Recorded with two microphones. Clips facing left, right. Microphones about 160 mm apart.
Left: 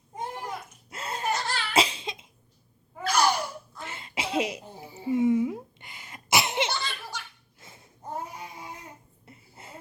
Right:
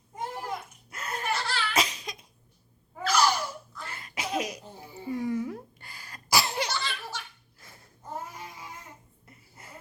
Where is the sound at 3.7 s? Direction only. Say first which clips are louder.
Left 3 dB; 25° left (ahead or behind).